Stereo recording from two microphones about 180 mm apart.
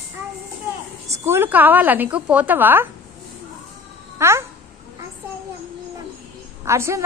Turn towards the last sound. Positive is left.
turn(degrees=-15)  # may be behind; listen again after turning